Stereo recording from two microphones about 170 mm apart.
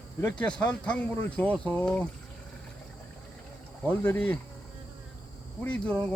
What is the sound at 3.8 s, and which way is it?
Speech, 10° left (ahead or behind).